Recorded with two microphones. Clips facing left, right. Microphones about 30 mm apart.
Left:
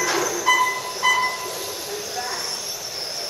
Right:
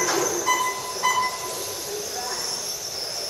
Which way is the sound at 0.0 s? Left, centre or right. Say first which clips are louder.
Left 2 dB; centre.